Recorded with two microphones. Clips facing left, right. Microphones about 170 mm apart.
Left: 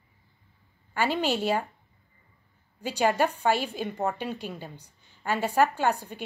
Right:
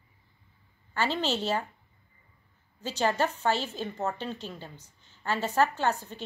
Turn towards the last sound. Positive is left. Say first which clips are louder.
# left 2 dB
turn(degrees=15)  # may be behind; listen again after turning